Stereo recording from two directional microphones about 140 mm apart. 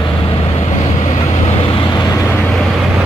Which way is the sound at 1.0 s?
50° left (ahead or behind).